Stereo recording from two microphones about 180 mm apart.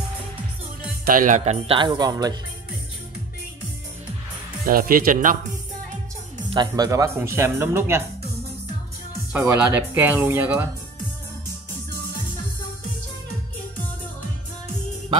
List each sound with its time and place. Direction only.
1.0 s speech: 50° right (ahead or behind); by 2.3 s 20° right (ahead or behind)
4.6 s speech: 55° right (ahead or behind)
6.5 s speech: 25° right (ahead or behind)
9.3 s speech: 15° right (ahead or behind)